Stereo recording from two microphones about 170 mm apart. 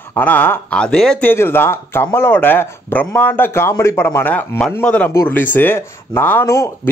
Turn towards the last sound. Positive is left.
turn(degrees=15)  # may be behind; listen again after turning